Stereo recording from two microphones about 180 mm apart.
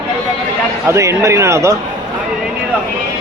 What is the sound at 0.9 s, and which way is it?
Speech, 15° right (ahead or behind).